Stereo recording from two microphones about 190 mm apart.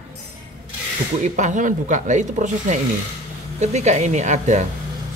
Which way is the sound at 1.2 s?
40° right (ahead or behind).